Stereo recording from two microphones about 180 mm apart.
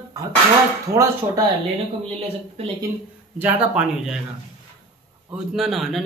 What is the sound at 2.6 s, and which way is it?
Speech, 35° right (ahead or behind).